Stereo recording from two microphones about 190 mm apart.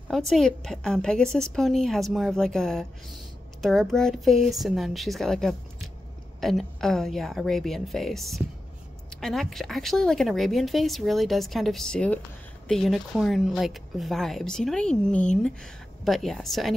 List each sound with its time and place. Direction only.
0.3 s speech: centre (ahead or behind)